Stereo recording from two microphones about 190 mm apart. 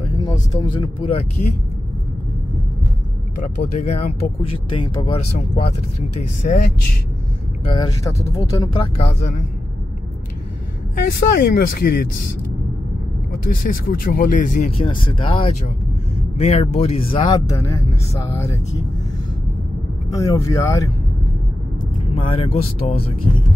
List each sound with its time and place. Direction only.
0.0 s speech: 25° left (ahead or behind)
3.4 s speech: 40° left (ahead or behind)
7.6 s speech: 30° left (ahead or behind)
8.0 s speech: 15° left (ahead or behind)
8.7 s speech: 30° left (ahead or behind)
11.1 s speech: 55° left (ahead or behind)
13.3 s speech: 50° left (ahead or behind)
14.8 s speech: 25° left (ahead or behind)
20.1 s speech: 15° left (ahead or behind)
22.1 s speech: 30° left (ahead or behind)